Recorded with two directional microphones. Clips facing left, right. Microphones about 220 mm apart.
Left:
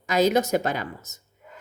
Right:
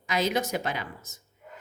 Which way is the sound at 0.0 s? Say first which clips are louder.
Left 7 dB; 40° left (ahead or behind).